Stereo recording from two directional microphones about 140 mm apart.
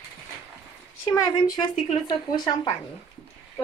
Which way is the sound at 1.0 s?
20° left (ahead or behind).